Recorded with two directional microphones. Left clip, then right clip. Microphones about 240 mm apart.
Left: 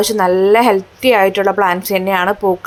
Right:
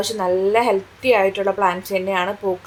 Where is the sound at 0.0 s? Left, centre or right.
Left.